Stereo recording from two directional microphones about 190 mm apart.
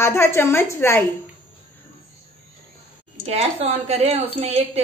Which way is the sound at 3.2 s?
35° right (ahead or behind).